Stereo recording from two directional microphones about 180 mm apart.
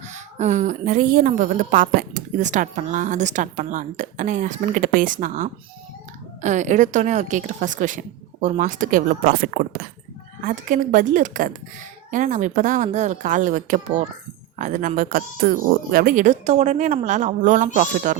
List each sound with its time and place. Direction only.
0.1 s a woman's voice: 40° right (ahead or behind)